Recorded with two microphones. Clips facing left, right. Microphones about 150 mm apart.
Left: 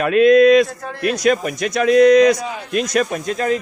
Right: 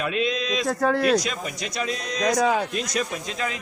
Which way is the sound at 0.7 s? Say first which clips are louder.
Right 9 dB; 80° right.